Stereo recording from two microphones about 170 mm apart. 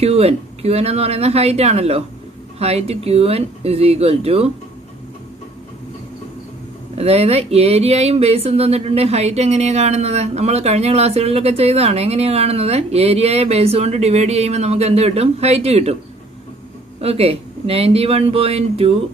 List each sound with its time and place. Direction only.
0.0 s speech: 35° right (ahead or behind)
7.0 s speech: 35° right (ahead or behind)
17.0 s speech: 35° right (ahead or behind)